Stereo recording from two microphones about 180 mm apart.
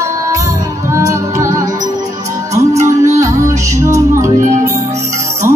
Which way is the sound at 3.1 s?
15° right (ahead or behind).